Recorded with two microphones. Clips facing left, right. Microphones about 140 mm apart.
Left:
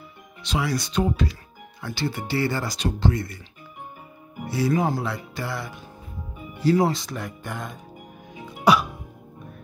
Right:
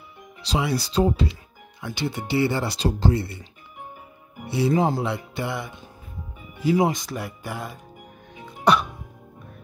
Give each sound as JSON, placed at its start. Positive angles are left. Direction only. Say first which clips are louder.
{"t": 0.5, "sound": "speech", "louder": "right 1 dB", "side_deg": -30}
{"t": 1.8, "sound": "speech", "louder": "even", "side_deg": -20}
{"t": 4.5, "sound": "speech", "louder": "right 2 dB", "side_deg": -25}
{"t": 8.7, "sound": "music", "louder": "left 1 dB", "side_deg": 5}